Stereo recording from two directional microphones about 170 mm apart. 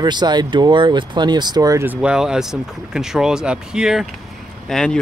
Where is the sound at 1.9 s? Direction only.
5° right (ahead or behind).